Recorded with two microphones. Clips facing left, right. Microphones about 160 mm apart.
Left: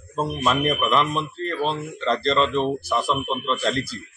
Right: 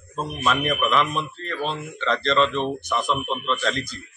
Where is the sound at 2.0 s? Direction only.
35° left (ahead or behind).